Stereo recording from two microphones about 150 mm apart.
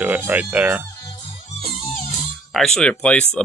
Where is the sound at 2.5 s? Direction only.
5° left (ahead or behind).